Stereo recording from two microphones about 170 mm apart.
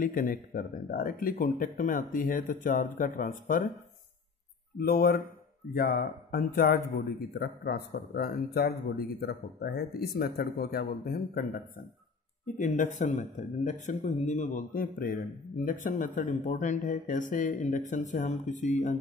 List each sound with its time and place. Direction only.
0.0 s speech: 55° left (ahead or behind)
4.7 s speech: 60° left (ahead or behind)